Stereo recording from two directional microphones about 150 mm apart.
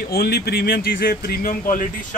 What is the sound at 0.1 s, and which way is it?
Speech, 90° left.